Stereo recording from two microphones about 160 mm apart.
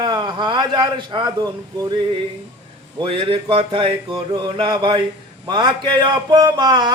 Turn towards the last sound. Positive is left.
turn(degrees=-30)  # may be behind; listen again after turning